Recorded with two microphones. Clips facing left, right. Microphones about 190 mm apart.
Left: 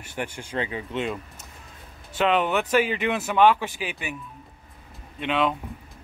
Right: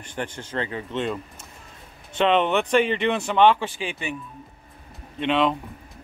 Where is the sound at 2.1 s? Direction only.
5° left (ahead or behind).